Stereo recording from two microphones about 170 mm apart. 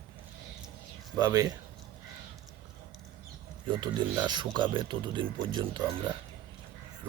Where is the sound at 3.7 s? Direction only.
25° right (ahead or behind).